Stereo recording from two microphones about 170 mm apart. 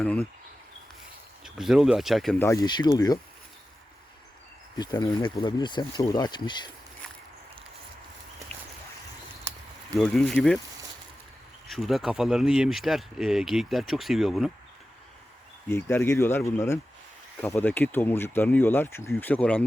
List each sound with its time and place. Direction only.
0.0 s speech: 10° left (ahead or behind)
1.5 s speech: 5° right (ahead or behind)
2.4 s speech: 20° left (ahead or behind)
4.8 s speech: 25° left (ahead or behind)
9.9 s speech: 5° left (ahead or behind)
11.7 s speech: centre (ahead or behind)
15.7 s speech: 15° left (ahead or behind)